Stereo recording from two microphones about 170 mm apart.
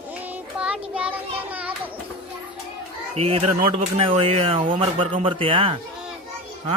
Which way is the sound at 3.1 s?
35° right (ahead or behind).